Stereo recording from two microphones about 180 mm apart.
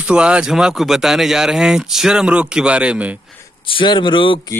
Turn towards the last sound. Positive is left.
turn(degrees=30)  # may be behind; listen again after turning